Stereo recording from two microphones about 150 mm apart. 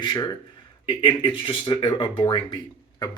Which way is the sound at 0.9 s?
35° left (ahead or behind).